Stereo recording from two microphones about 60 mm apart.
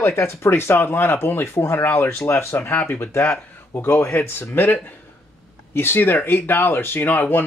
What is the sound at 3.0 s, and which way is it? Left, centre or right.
Speech, left.